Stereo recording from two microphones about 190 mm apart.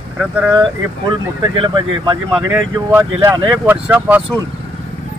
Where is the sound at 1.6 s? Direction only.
25° right (ahead or behind).